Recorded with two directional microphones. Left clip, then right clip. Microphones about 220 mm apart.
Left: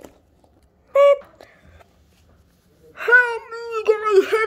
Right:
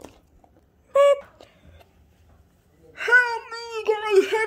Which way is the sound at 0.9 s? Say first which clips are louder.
Left 3 dB; 5° left (ahead or behind).